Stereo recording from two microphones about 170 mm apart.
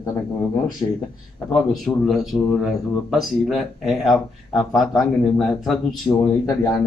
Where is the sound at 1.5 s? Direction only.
Centre (ahead or behind).